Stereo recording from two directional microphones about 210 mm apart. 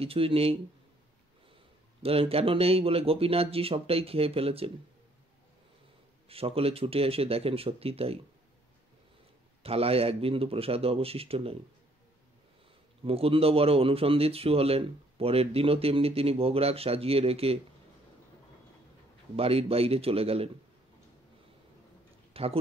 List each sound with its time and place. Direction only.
0.0 s speech: 25° right (ahead or behind)
2.0 s speech: 25° right (ahead or behind)
6.2 s speech: 25° right (ahead or behind)
9.6 s speech: 30° right (ahead or behind)
13.0 s speech: 25° right (ahead or behind)
19.3 s speech: 30° right (ahead or behind)
22.3 s a sound: 25° right (ahead or behind)